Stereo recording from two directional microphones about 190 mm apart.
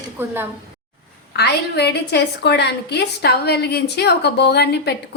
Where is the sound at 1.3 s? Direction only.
60° left (ahead or behind).